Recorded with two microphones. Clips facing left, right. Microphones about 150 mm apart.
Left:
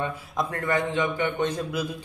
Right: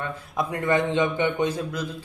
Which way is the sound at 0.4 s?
15° right (ahead or behind).